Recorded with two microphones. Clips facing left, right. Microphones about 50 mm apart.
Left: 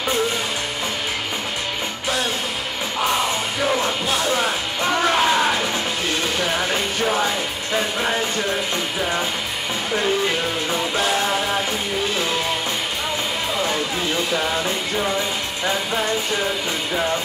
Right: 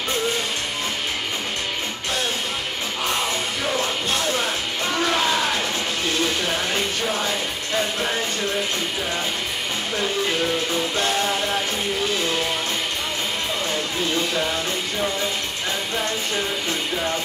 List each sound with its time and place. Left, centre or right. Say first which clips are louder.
4.1 s music: left 4 dB; centre
11.0 s music: left 3 dB; centre